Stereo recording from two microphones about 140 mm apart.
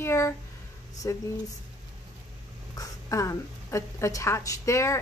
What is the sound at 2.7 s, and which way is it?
A woman's voice, 25° left (ahead or behind).